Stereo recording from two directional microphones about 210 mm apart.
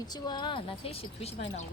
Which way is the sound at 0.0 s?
20° left (ahead or behind).